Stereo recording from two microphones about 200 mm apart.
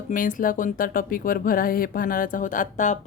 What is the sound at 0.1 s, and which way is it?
Speech, 40° left (ahead or behind).